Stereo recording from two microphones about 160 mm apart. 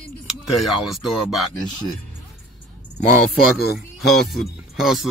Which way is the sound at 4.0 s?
Centre (ahead or behind).